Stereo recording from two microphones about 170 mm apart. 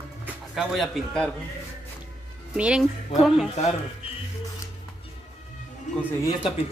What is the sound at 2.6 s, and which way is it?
Speech, 5° right (ahead or behind).